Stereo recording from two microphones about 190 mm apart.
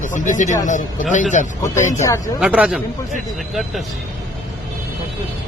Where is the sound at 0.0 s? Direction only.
40° left (ahead or behind).